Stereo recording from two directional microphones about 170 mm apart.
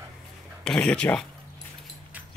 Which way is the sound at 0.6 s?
5° left (ahead or behind).